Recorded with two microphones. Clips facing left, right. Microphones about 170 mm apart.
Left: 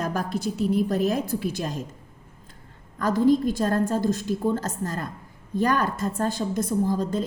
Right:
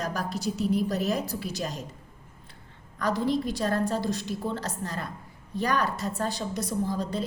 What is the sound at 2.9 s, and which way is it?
A woman's voice, 50° left (ahead or behind).